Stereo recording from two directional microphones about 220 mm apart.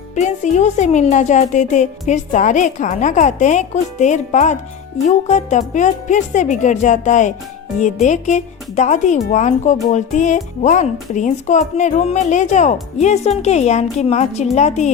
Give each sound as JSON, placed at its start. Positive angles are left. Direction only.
{"t": 0.1, "sound": "speech", "side_deg": 30}